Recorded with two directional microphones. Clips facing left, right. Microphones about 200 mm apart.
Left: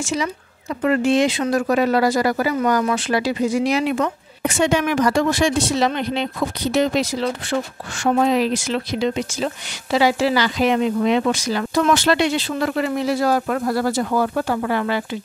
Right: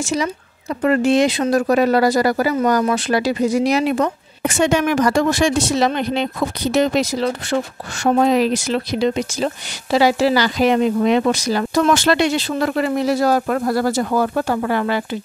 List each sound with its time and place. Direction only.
0.0 s speech: 40° right (ahead or behind)